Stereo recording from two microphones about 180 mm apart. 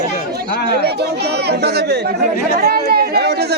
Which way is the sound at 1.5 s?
65° right (ahead or behind).